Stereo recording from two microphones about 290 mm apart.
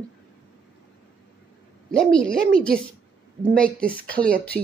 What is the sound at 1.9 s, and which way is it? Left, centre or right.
Speech, centre.